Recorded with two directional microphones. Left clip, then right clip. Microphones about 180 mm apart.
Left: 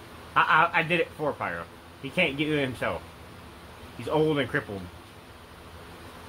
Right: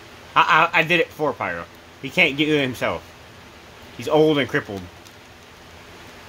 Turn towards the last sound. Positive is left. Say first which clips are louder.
# right 8 dB
turn(degrees=-80)